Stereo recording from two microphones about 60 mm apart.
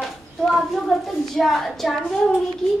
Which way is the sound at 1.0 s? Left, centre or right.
Centre.